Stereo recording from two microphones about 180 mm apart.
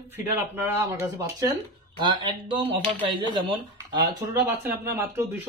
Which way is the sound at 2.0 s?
25° right (ahead or behind).